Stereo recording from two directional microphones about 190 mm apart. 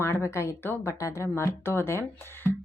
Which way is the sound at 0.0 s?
15° left (ahead or behind).